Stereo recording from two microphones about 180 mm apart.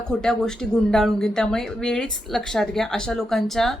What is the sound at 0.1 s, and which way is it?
Speech, 5° left (ahead or behind).